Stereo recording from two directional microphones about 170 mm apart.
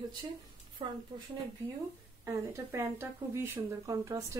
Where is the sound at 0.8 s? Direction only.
35° right (ahead or behind).